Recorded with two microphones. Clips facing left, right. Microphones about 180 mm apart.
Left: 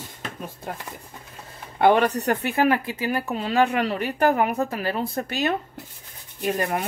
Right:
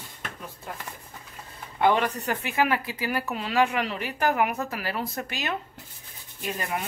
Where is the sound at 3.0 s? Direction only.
25° left (ahead or behind).